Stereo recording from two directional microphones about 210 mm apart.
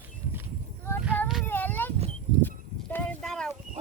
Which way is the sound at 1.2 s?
5° left (ahead or behind).